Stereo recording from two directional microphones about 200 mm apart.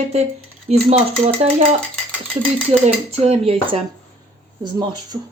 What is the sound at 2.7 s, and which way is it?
Speech, 35° right (ahead or behind).